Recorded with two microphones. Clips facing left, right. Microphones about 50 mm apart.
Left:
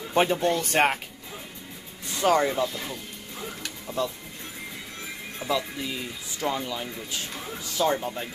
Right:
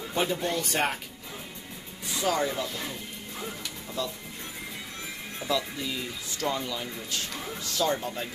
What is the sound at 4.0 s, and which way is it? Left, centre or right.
Speech, left.